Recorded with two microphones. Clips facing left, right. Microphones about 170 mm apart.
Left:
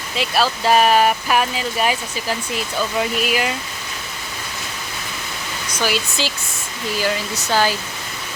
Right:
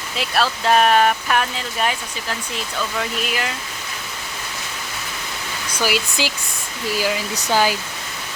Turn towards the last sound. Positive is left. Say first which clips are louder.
# even
turn(degrees=-15)  # may be behind; listen again after turning